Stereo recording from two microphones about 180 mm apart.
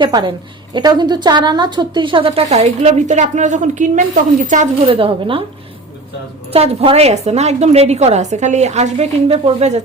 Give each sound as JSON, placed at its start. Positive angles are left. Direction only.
{"t": 0.0, "sound": "a woman's voice", "side_deg": -25}
{"t": 4.9, "sound": "a woman's voice", "side_deg": -30}
{"t": 6.5, "sound": "a woman's voice", "side_deg": -35}